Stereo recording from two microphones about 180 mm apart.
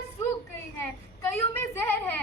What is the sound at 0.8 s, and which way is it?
A woman's voice, 10° left (ahead or behind).